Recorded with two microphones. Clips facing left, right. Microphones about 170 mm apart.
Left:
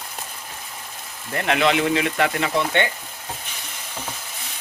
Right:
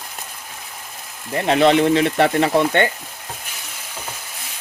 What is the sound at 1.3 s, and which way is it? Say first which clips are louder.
Speech: right 4 dB; 20° right (ahead or behind).